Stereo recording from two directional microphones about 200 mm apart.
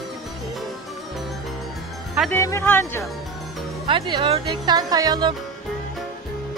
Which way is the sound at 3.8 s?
25° right (ahead or behind).